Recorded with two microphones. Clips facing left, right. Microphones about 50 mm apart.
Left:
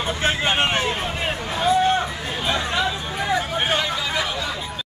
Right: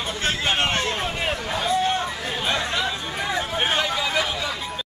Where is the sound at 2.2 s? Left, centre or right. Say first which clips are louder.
Left 1 dB; centre.